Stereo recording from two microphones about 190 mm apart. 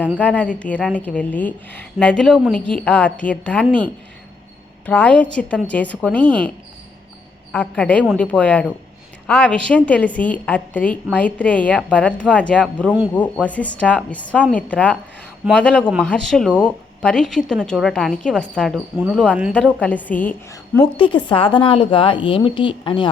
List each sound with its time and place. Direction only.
0.2 s a woman's voice: 5° left (ahead or behind)
7.5 s a woman's voice: 10° left (ahead or behind)
19.8 s a woman's voice: 10° left (ahead or behind)
20.8 s a woman's voice: 25° left (ahead or behind)